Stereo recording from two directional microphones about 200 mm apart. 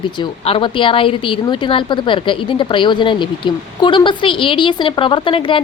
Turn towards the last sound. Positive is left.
turn(degrees=25)  # may be behind; listen again after turning